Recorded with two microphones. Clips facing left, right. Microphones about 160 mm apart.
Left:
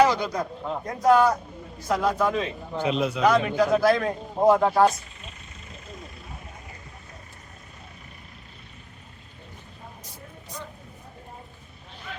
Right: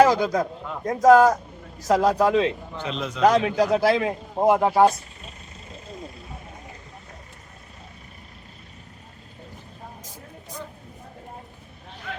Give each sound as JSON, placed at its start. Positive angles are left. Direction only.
{"t": 0.0, "sound": "speech", "side_deg": -45}
{"t": 2.7, "sound": "a man's voice", "side_deg": 10}
{"t": 3.2, "sound": "speech", "side_deg": -35}
{"t": 4.0, "sound": "speech", "side_deg": -15}
{"t": 5.2, "sound": "vehicle", "side_deg": -30}